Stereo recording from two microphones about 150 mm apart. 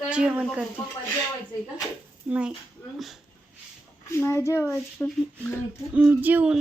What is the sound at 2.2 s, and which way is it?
Speech, 10° right (ahead or behind).